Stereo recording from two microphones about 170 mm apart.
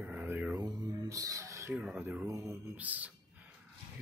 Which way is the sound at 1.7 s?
5° right (ahead or behind).